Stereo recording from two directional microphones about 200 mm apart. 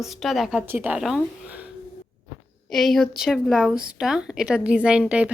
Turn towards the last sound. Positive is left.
turn(degrees=-5)  # may be behind; listen again after turning